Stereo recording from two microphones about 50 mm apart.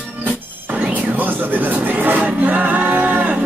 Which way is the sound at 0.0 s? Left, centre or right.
Right.